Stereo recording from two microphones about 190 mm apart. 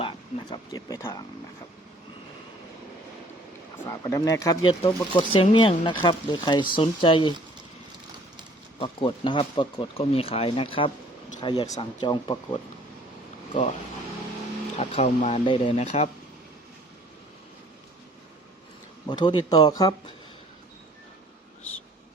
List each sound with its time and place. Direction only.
0.5 s speech: 20° left (ahead or behind)
3.8 s speech: 15° left (ahead or behind)
8.8 s speech: 25° left (ahead or behind)
14.8 s speech: 35° left (ahead or behind)
19.0 s speech: 20° left (ahead or behind)